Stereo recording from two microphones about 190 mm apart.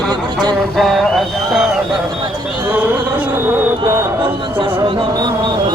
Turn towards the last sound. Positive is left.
turn(degrees=-25)  # may be behind; listen again after turning